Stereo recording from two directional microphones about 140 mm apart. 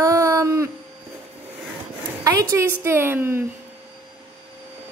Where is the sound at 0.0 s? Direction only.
20° right (ahead or behind).